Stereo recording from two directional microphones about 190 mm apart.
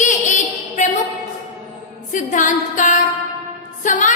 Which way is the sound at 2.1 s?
40° left (ahead or behind).